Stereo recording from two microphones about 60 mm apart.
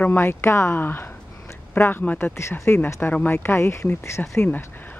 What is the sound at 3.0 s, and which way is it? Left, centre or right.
Speech, left.